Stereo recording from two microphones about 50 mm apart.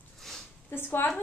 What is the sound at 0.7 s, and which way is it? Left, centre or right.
Speech, left.